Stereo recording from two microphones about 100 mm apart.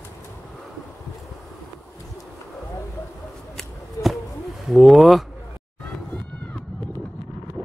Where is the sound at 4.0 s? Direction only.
30° left (ahead or behind).